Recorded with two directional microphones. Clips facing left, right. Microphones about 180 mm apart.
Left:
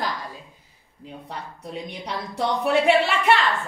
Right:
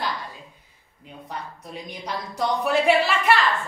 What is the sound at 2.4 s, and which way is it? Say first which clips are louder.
Speech: left 1 dB; 25° left (ahead or behind).